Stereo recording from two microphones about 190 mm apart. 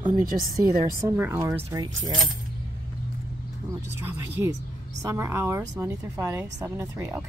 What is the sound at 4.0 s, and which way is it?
Speech, 15° right (ahead or behind).